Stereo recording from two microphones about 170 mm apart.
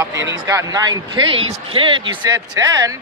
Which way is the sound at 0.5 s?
20° right (ahead or behind).